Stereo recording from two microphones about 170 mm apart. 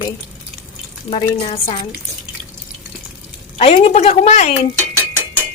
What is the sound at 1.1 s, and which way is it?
Speech, 30° left (ahead or behind).